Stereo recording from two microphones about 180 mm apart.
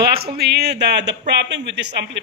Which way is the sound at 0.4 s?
65° right (ahead or behind).